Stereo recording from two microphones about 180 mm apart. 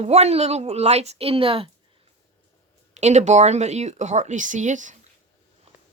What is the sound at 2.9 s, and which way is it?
Speech, 40° right (ahead or behind).